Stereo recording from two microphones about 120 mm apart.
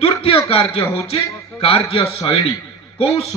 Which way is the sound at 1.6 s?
50° left (ahead or behind).